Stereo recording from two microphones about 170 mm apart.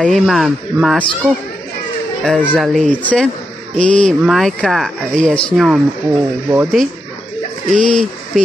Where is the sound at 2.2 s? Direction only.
5° left (ahead or behind); by 6.7 s 10° right (ahead or behind).